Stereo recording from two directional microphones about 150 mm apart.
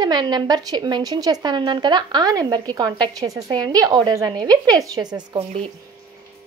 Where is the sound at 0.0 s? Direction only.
30° right (ahead or behind).